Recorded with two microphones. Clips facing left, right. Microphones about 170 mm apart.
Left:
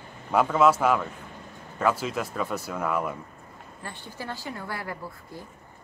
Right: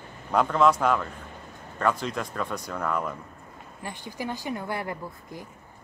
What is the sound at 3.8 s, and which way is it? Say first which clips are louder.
Speech: right 4 dB; 15° right (ahead or behind).